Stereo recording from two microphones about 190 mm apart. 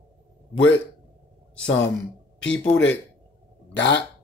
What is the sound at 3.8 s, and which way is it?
Speech, 65° left (ahead or behind).